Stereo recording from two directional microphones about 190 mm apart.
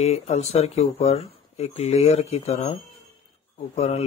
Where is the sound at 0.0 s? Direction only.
35° left (ahead or behind).